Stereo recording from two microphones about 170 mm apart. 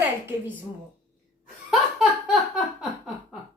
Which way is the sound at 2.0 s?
5° right (ahead or behind).